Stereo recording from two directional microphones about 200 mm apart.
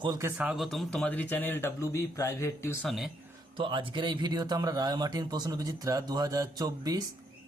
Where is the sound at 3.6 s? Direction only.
25° right (ahead or behind).